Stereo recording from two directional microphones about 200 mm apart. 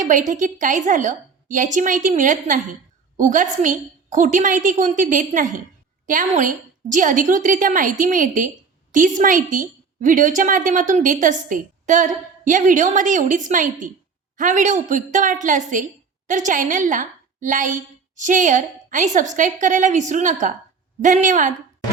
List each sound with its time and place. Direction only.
0.0 s a woman's voice: 40° right (ahead or behind)